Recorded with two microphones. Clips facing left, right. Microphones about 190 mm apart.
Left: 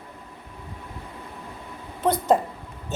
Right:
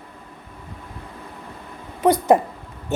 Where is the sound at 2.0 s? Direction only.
70° right (ahead or behind).